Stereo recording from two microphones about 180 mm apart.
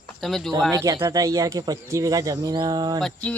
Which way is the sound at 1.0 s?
20° right (ahead or behind).